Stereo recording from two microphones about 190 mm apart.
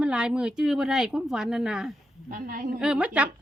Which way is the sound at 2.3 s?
45° right (ahead or behind).